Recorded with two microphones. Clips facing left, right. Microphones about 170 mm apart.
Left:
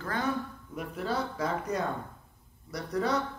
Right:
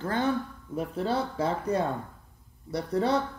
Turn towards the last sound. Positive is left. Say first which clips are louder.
# right 4 dB
turn(degrees=-30)  # may be behind; listen again after turning